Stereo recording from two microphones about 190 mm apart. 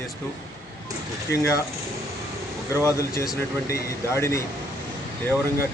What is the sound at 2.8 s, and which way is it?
Speech, 15° left (ahead or behind).